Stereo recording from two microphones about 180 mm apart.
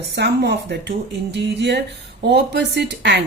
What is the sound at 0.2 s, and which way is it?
A woman's voice, 70° right (ahead or behind).